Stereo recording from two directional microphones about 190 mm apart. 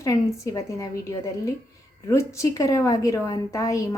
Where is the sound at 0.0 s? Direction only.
15° left (ahead or behind).